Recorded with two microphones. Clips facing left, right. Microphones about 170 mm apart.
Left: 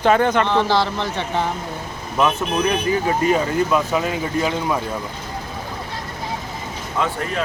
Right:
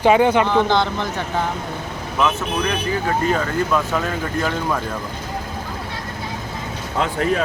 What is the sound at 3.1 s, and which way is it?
Speech, 15° left (ahead or behind).